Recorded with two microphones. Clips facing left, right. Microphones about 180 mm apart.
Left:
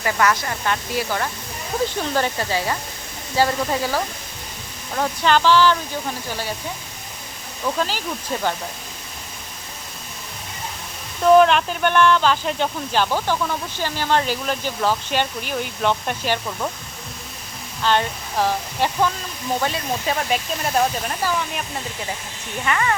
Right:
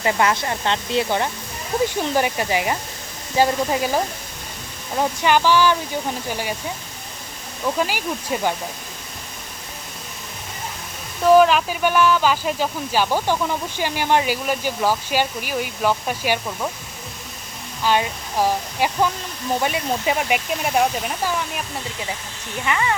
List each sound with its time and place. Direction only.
0.0 s speech: 25° right (ahead or behind)
7.6 s speech: 10° right (ahead or behind)
11.2 s speech: 5° right (ahead or behind)
17.8 s speech: 10° right (ahead or behind)
22.6 s speech: 15° right (ahead or behind)